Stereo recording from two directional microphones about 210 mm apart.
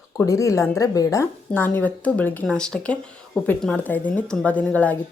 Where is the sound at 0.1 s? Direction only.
15° left (ahead or behind).